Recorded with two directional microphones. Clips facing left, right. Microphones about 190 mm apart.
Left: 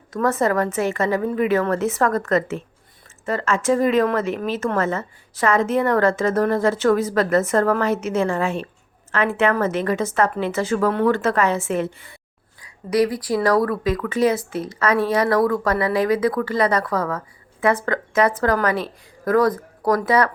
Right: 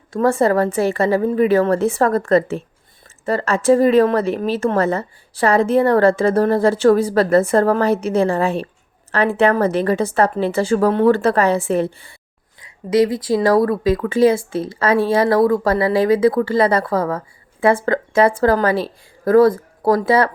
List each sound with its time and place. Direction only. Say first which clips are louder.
0.1 s a woman's voice: right 4 dB; 30° right (ahead or behind)